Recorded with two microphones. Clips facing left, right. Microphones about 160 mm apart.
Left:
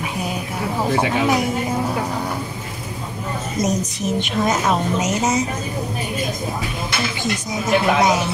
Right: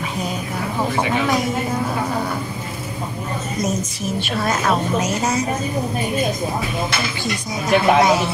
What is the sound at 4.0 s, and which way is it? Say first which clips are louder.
A woman's voice: left 2 dB; 15° left (ahead or behind).